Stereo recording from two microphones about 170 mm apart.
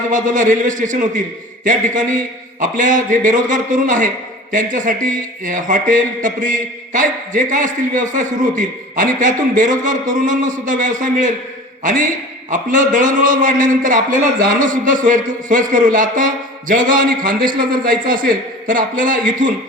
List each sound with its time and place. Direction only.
0.1 s speech: 50° right (ahead or behind)